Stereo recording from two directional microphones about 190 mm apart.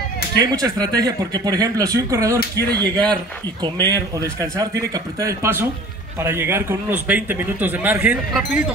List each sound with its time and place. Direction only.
0.4 s a man's voice: 20° right (ahead or behind)